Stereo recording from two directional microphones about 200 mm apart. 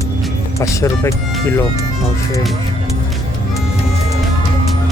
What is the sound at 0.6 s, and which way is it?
Speech, 15° left (ahead or behind).